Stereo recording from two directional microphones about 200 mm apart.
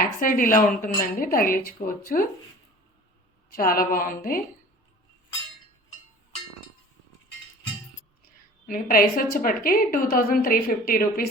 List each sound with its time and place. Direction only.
0.2 s a woman's voice: 45° left (ahead or behind)
3.5 s a woman's voice: 45° left (ahead or behind)
8.6 s a woman's voice: 45° left (ahead or behind)